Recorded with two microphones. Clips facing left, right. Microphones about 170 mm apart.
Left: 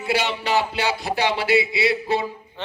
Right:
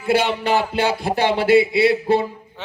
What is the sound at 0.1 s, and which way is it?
Speech, 55° right (ahead or behind).